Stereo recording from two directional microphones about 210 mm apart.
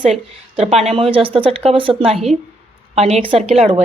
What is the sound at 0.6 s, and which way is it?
A woman's voice, 30° right (ahead or behind).